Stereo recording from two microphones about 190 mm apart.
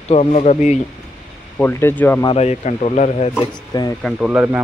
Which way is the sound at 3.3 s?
20° left (ahead or behind).